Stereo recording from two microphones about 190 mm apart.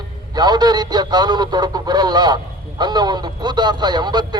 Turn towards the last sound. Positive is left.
turn(degrees=-20)  # may be behind; listen again after turning